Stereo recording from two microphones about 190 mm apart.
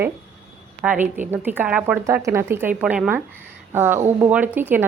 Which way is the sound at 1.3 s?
10° right (ahead or behind).